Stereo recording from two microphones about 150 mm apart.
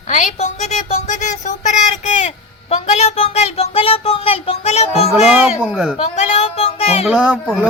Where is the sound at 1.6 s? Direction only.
50° left (ahead or behind).